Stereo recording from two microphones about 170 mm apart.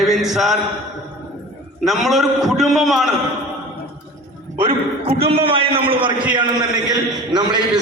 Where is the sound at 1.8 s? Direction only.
Centre (ahead or behind).